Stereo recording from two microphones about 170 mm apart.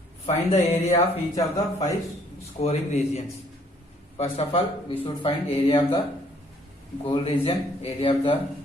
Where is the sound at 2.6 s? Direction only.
40° left (ahead or behind).